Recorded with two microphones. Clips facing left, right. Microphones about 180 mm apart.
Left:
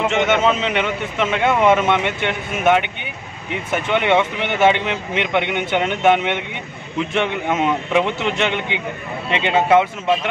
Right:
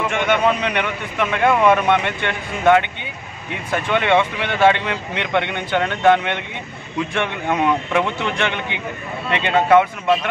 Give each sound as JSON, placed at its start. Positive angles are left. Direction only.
{"t": 0.0, "sound": "a man's voice", "side_deg": 20}